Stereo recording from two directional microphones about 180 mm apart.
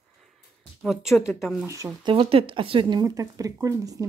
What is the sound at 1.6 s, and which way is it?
Speech, 20° right (ahead or behind).